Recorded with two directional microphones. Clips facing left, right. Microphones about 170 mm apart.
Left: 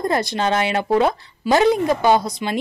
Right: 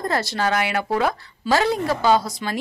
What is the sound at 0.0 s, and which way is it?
A woman's voice, 15° left (ahead or behind).